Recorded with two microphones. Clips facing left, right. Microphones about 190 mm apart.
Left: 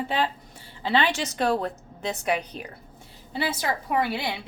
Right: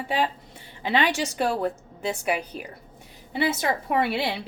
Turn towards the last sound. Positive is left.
turn(degrees=-30)  # may be behind; listen again after turning